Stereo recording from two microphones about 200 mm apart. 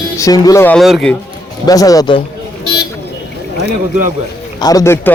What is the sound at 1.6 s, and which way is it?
Speech, 15° left (ahead or behind).